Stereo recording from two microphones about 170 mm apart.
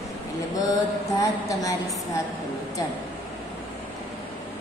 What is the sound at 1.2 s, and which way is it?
Speech, 20° left (ahead or behind).